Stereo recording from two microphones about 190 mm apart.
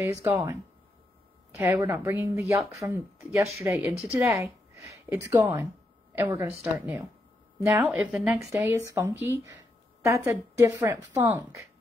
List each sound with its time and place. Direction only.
0.2 s a woman's voice: 15° right (ahead or behind)
1.6 s a woman's voice: 10° right (ahead or behind)
2.6 s a woman's voice: centre (ahead or behind)
3.2 s a woman's voice: 15° right (ahead or behind)
8.6 s a woman's voice: 15° right (ahead or behind)